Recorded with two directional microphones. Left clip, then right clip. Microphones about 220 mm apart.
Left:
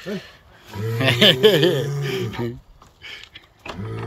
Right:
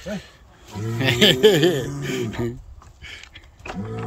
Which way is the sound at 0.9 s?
10° right (ahead or behind).